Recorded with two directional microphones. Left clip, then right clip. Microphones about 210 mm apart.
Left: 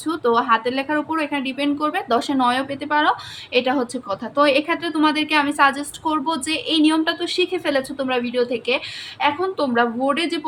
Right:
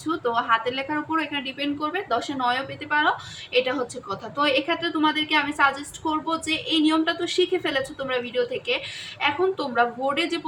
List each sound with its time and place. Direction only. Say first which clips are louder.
0.0 s speech: left 5 dB; 50° left (ahead or behind)